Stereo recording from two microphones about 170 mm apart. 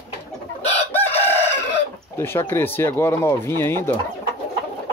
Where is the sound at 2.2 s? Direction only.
15° left (ahead or behind).